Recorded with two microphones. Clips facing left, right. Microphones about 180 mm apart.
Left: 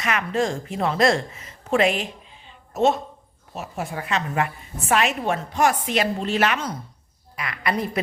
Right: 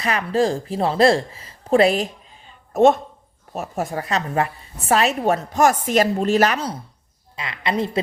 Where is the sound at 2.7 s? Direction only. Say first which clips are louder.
Right 5 dB; 50° right (ahead or behind); by 6.7 s 35° right (ahead or behind).